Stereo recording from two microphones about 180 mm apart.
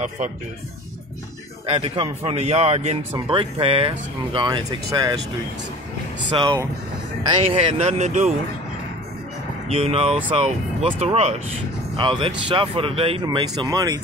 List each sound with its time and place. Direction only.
1.7 s a man's voice: 30° right (ahead or behind)
6.3 s speech: 25° right (ahead or behind)
7.6 s a man's voice: 35° right (ahead or behind)
9.7 s a man's voice: 35° right (ahead or behind)